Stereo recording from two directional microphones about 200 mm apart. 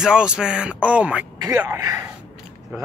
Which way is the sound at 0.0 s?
5° right (ahead or behind).